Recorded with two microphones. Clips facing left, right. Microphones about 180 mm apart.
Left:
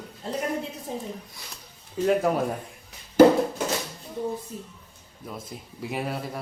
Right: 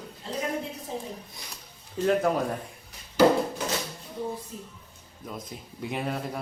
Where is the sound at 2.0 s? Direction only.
5° left (ahead or behind).